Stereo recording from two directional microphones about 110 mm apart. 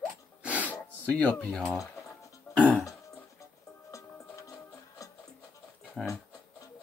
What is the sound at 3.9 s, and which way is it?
Music, 30° left (ahead or behind).